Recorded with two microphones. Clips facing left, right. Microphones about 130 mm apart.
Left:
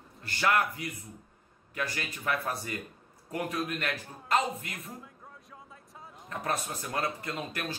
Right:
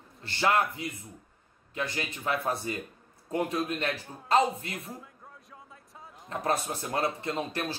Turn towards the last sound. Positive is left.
turn(degrees=-30)  # may be behind; listen again after turning